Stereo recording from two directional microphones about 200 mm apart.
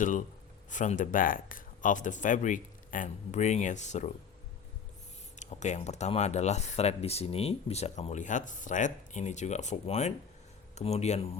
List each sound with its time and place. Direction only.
0.0 s speech: 40° left (ahead or behind)
5.4 s speech: 35° left (ahead or behind)